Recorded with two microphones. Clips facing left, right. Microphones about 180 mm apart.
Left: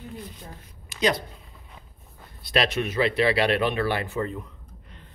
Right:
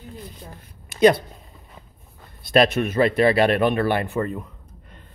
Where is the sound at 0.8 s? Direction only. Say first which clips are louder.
Right 9 dB; 55° right (ahead or behind).